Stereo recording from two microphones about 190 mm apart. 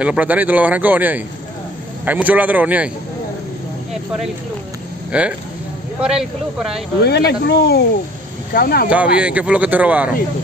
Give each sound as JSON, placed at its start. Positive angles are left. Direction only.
{"t": 0.0, "sound": "speech", "side_deg": -5}
{"t": 5.1, "sound": "speech", "side_deg": -5}
{"t": 7.0, "sound": "speech", "side_deg": 60}
{"t": 9.2, "sound": "speech", "side_deg": -5}